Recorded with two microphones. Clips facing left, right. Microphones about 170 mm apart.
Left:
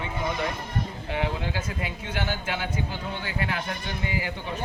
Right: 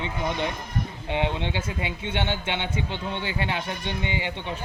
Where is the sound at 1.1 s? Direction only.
25° right (ahead or behind).